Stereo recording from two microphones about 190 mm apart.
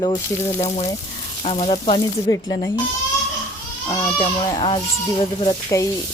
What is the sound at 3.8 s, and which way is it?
Speech, 25° left (ahead or behind).